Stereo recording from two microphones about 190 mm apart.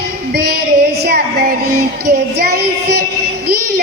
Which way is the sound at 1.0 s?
55° right (ahead or behind).